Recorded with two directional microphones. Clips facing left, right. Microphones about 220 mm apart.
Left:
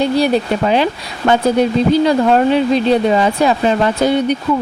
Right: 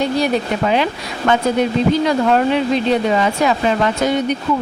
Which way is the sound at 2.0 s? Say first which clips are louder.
Left 3 dB; 35° left (ahead or behind).